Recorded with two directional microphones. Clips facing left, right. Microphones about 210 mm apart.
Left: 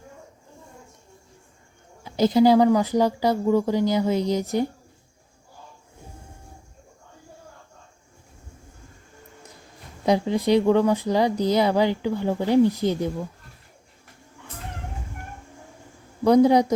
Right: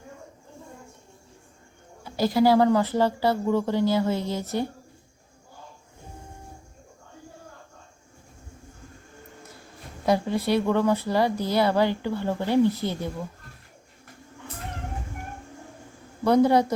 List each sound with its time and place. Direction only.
2.0 s speech: 20° left (ahead or behind)
10.1 s speech: 15° left (ahead or behind)
16.2 s speech: 15° left (ahead or behind)